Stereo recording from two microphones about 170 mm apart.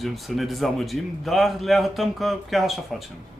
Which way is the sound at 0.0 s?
Centre (ahead or behind).